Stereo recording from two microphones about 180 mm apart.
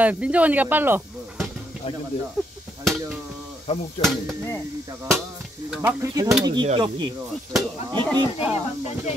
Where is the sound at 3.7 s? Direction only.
35° left (ahead or behind).